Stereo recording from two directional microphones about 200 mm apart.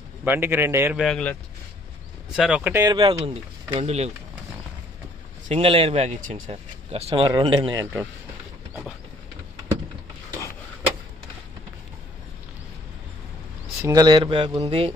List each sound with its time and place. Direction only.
0.2 s a man's voice: 10° right (ahead or behind)
0.9 s speech: centre (ahead or behind)
2.3 s speech: 5° right (ahead or behind)
2.8 s speech: 20° right (ahead or behind)
3.7 s speech: 35° right (ahead or behind)
5.5 s speech: 30° right (ahead or behind)
13.8 s speech: 20° right (ahead or behind)